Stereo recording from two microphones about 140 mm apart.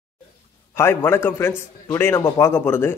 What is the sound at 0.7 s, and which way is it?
Speech, 20° left (ahead or behind).